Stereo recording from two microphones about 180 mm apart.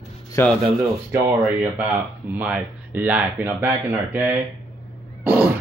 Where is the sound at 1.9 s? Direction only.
10° right (ahead or behind).